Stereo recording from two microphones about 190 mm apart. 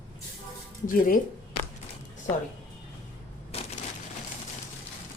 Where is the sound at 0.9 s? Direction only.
45° left (ahead or behind).